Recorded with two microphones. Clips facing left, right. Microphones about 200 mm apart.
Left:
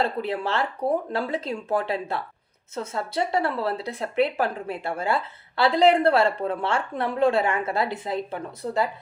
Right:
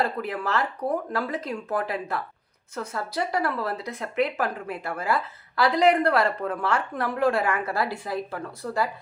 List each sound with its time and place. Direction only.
0.0 s speech: 25° left (ahead or behind)